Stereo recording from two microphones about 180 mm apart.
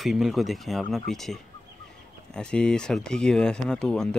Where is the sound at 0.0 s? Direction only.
Centre (ahead or behind).